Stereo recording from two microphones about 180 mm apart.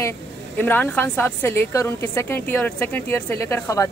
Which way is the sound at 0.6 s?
10° left (ahead or behind).